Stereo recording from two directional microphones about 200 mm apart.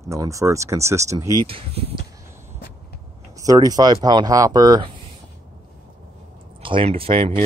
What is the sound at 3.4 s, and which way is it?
Speech, 20° right (ahead or behind).